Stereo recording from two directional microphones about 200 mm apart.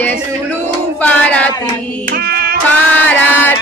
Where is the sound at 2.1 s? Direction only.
50° right (ahead or behind).